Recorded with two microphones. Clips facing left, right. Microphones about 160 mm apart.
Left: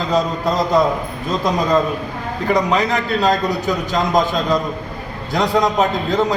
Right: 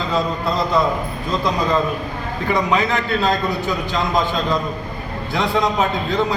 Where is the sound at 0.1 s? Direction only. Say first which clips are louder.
Left 3 dB; 45° left (ahead or behind).